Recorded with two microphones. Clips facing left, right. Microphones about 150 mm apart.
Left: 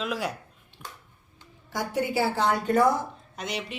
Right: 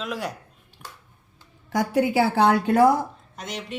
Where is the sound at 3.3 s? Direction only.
Centre (ahead or behind).